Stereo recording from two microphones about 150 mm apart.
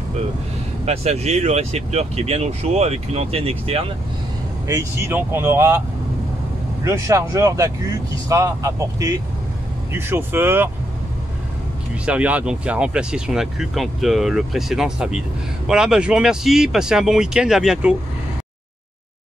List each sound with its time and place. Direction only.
0.8 s speech: 45° right (ahead or behind)
4.6 s speech: 20° right (ahead or behind)
6.8 s speech: 20° right (ahead or behind)
11.9 s speech: 10° right (ahead or behind)